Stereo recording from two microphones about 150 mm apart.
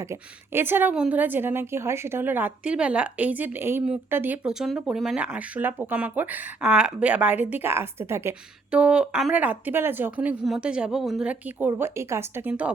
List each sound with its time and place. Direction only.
0.0 s a woman's voice: 15° right (ahead or behind)